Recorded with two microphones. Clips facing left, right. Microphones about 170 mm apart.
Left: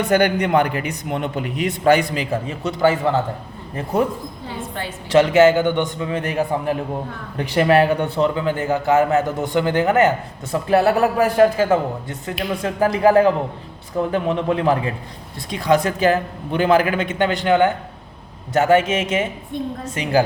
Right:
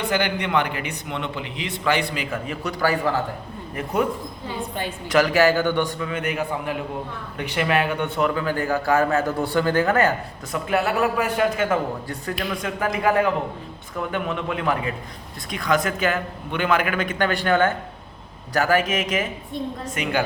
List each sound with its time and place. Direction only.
0.1 s a man's voice: 45° left (ahead or behind); by 3.2 s 25° left (ahead or behind)
5.0 s a man's voice: 25° left (ahead or behind)
10.7 s a man's voice: 35° left (ahead or behind); by 12.4 s 20° left (ahead or behind)
12.6 s a man's voice: 35° left (ahead or behind)